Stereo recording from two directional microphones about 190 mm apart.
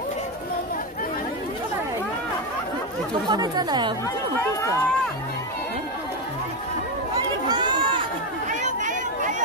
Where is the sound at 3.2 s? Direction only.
20° right (ahead or behind).